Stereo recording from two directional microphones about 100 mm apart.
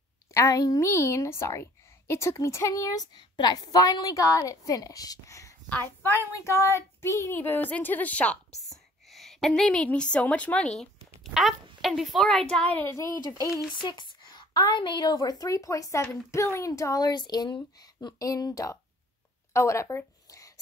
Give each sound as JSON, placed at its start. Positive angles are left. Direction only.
{"t": 0.3, "sound": "a woman's voice", "side_deg": 35}
{"t": 5.7, "sound": "a child's voice", "side_deg": 20}
{"t": 8.5, "sound": "a woman's voice", "side_deg": 0}
{"t": 12.9, "sound": "a woman's voice", "side_deg": 30}
{"t": 13.7, "sound": "a woman's voice", "side_deg": 50}
{"t": 19.5, "sound": "a sound", "side_deg": 30}